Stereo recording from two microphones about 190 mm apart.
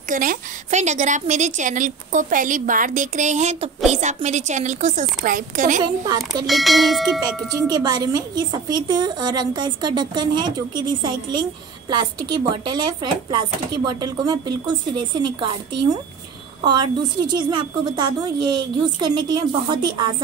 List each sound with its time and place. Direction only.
0.1 s a woman's voice: 45° right (ahead or behind)
6.0 s speech: 20° right (ahead or behind)
6.4 s speech: centre (ahead or behind)
7.7 s speech: 20° right (ahead or behind)